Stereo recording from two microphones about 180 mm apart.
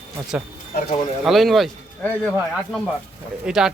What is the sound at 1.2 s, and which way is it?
Speech, centre (ahead or behind).